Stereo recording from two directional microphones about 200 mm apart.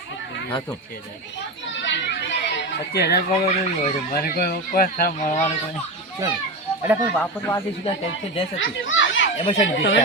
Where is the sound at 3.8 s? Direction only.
50° left (ahead or behind).